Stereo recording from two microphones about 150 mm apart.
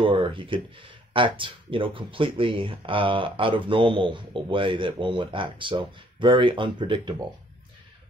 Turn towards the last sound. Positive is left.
turn(degrees=-30)  # may be behind; listen again after turning